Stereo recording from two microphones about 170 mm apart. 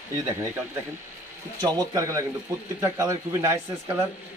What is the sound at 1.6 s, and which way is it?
A man's voice, 20° right (ahead or behind).